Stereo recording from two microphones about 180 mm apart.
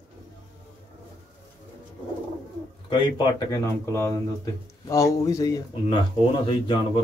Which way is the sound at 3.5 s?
15° left (ahead or behind).